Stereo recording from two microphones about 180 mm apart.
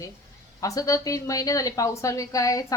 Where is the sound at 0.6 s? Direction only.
20° left (ahead or behind).